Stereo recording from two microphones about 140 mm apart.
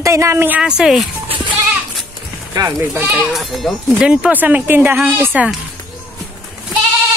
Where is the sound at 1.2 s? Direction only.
35° right (ahead or behind).